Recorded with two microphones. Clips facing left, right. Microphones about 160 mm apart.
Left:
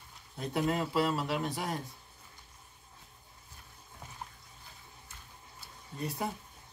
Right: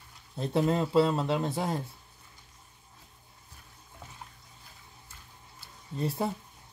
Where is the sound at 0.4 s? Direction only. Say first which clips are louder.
Right 4 dB; 25° right (ahead or behind).